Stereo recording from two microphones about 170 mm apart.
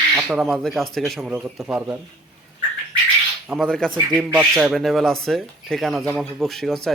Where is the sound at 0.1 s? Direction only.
15° right (ahead or behind).